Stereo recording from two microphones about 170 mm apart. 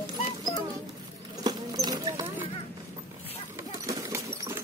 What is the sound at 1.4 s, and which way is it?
Clip-clop, 25° right (ahead or behind).